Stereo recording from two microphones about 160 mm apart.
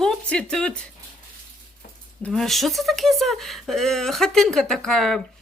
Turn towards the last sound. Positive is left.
turn(degrees=5)  # may be behind; listen again after turning